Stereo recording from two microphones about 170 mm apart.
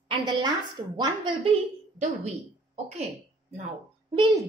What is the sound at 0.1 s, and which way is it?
A woman's voice, 25° right (ahead or behind).